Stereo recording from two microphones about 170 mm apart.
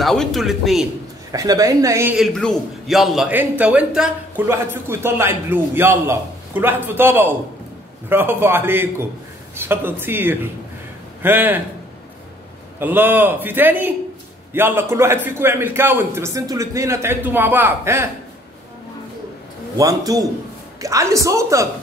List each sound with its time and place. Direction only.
0.0 s a man's voice: centre (ahead or behind)
1.3 s a woman's voice: 20° right (ahead or behind)
2.1 s a man's voice: centre (ahead or behind)
12.7 s a man's voice: 10° right (ahead or behind)
19.8 s a woman's voice: 20° right (ahead or behind)